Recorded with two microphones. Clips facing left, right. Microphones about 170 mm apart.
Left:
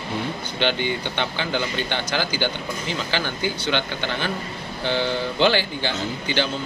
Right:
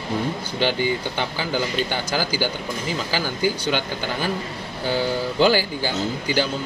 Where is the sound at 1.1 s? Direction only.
5° right (ahead or behind).